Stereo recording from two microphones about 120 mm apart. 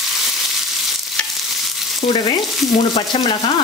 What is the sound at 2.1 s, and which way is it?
Speech, 35° left (ahead or behind).